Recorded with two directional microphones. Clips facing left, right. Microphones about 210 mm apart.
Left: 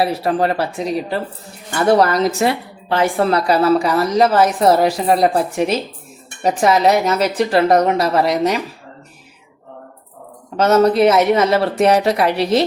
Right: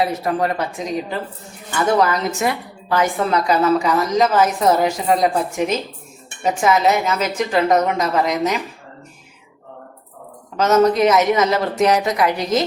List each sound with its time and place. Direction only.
0.0 s a woman's voice: 30° left (ahead or behind)
1.7 s a woman's voice: 35° left (ahead or behind)
10.6 s a woman's voice: 30° left (ahead or behind)